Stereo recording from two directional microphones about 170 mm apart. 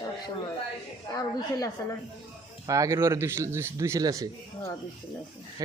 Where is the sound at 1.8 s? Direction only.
20° left (ahead or behind).